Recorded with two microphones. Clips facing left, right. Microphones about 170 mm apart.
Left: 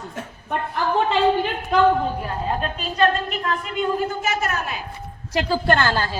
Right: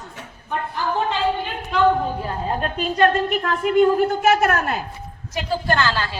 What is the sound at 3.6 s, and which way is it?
A man's voice, 60° right (ahead or behind).